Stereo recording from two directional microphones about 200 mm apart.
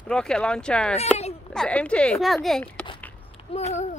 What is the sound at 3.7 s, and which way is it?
Speech, 35° left (ahead or behind).